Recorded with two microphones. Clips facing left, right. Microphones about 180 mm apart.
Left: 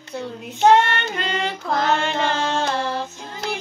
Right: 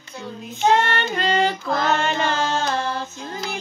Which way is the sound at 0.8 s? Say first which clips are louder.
Right 2 dB; 35° right (ahead or behind).